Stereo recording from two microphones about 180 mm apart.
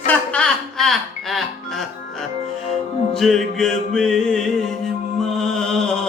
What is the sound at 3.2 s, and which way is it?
Mantra, centre (ahead or behind).